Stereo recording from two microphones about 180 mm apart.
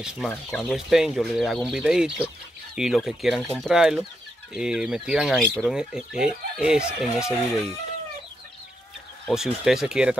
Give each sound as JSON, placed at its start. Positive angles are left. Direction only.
{"t": 0.3, "sound": "speech", "side_deg": 0}
{"t": 9.3, "sound": "speech", "side_deg": -5}